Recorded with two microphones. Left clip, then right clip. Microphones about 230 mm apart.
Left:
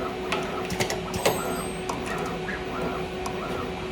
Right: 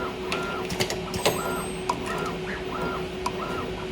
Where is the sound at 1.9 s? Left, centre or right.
Centre.